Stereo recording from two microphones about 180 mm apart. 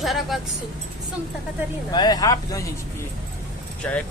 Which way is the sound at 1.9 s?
25° left (ahead or behind).